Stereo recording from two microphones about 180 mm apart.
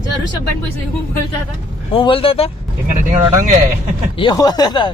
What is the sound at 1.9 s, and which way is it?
Speech, 30° left (ahead or behind).